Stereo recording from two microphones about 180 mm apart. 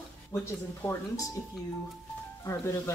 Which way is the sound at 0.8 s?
15° left (ahead or behind).